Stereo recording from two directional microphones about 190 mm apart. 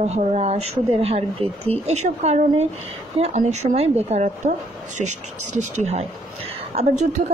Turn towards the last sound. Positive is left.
turn(degrees=-40)  # may be behind; listen again after turning